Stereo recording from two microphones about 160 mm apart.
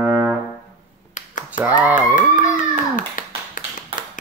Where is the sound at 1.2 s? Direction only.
50° left (ahead or behind).